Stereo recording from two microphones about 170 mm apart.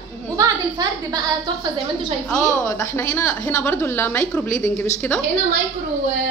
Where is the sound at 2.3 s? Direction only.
20° left (ahead or behind).